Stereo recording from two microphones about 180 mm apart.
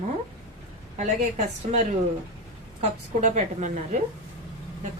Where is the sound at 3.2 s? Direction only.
40° right (ahead or behind).